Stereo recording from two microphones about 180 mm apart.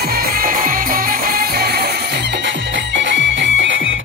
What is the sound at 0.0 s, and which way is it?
Music, 55° right (ahead or behind).